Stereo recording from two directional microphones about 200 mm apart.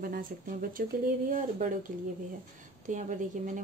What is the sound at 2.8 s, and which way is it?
Speech, 40° right (ahead or behind).